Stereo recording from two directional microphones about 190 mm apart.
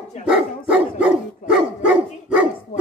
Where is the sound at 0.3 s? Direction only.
5° right (ahead or behind).